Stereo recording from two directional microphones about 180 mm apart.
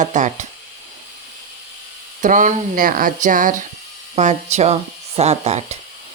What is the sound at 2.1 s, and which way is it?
Speech, 45° right (ahead or behind).